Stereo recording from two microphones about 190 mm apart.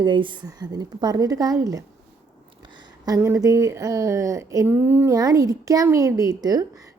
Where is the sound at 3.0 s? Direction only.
15° right (ahead or behind).